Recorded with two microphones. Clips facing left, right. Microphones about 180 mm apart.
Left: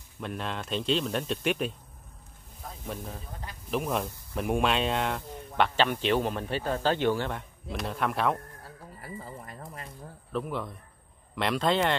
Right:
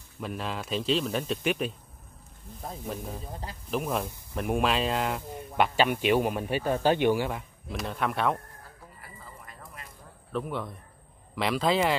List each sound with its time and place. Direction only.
0.2 s speech: centre (ahead or behind)
3.7 s speech: centre (ahead or behind)
9.0 s music: 40° left (ahead or behind)
10.3 s speech: centre (ahead or behind)